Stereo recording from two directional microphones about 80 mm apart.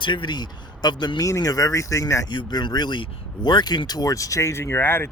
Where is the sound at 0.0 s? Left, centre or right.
Left.